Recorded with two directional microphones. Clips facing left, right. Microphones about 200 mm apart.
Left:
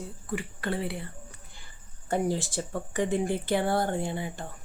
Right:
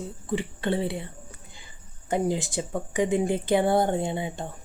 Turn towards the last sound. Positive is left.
turn(degrees=-20)  # may be behind; listen again after turning